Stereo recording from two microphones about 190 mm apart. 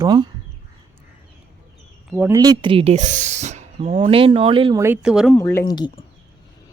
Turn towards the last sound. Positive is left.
turn(degrees=20)  # may be behind; listen again after turning